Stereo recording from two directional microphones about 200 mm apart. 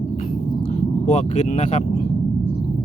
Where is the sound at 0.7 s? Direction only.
35° left (ahead or behind).